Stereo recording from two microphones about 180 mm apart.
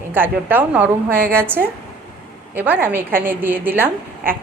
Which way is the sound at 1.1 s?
60° right (ahead or behind).